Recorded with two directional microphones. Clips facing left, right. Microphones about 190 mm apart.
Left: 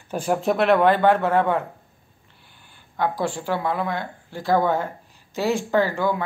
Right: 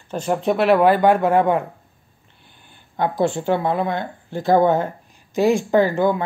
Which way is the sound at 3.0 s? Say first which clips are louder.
Right 4 dB; 25° right (ahead or behind).